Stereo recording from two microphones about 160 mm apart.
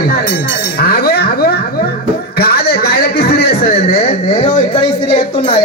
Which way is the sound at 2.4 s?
75° left (ahead or behind).